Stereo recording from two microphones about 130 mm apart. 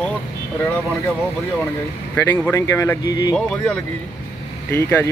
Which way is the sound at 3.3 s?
5° left (ahead or behind).